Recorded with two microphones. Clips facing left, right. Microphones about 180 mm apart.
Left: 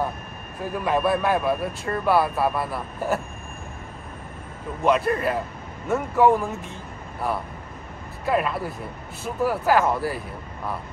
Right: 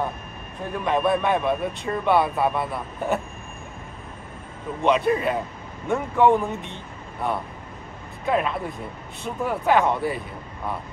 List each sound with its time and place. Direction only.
0.7 s a man's voice: 5° left (ahead or behind)
4.8 s a man's voice: centre (ahead or behind)